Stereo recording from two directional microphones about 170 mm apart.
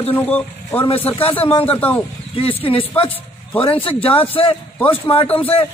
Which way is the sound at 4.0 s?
35° left (ahead or behind).